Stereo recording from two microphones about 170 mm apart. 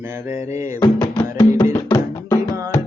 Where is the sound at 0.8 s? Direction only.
25° left (ahead or behind).